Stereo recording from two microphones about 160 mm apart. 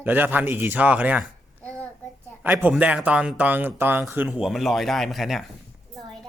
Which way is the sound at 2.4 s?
10° right (ahead or behind).